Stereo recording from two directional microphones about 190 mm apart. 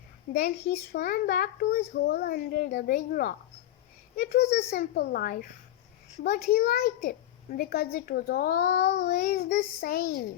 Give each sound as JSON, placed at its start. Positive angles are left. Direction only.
{"t": 0.3, "sound": "a child's voice", "side_deg": 45}
{"t": 4.4, "sound": "a child's voice", "side_deg": 60}
{"t": 9.0, "sound": "child singing", "side_deg": 35}
{"t": 9.6, "sound": "a child's voice", "side_deg": 55}